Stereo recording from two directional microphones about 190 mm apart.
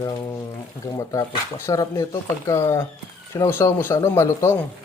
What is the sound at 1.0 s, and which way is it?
Speech, 15° left (ahead or behind).